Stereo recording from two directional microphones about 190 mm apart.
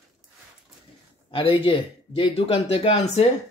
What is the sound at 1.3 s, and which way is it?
A man's voice, 30° left (ahead or behind).